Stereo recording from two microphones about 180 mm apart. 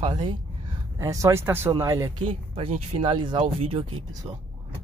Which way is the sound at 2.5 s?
35° right (ahead or behind).